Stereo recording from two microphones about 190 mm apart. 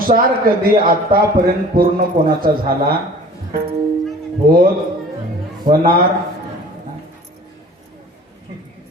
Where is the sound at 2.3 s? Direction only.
50° right (ahead or behind).